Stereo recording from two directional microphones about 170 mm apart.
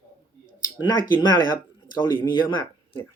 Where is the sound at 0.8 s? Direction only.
25° left (ahead or behind).